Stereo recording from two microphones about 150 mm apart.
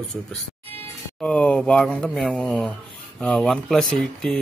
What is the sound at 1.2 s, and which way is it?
Speech, 5° left (ahead or behind).